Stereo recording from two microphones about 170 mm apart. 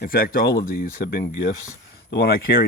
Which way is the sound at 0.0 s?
60° left (ahead or behind).